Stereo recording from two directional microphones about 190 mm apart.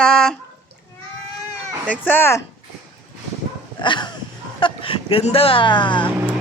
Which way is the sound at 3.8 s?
25° left (ahead or behind).